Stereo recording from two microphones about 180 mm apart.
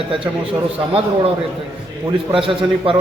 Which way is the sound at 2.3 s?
30° right (ahead or behind).